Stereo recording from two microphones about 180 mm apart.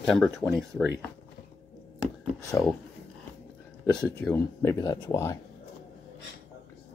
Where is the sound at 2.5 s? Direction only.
15° left (ahead or behind).